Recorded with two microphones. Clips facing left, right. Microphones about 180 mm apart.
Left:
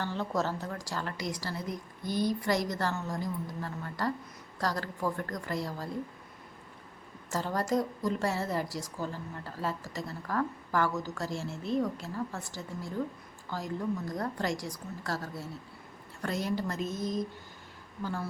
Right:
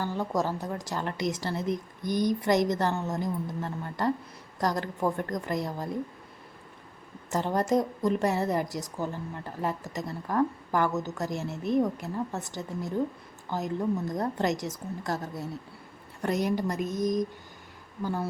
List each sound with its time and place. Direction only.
0.0 s a woman's voice: 10° right (ahead or behind)
7.3 s a woman's voice: 20° right (ahead or behind)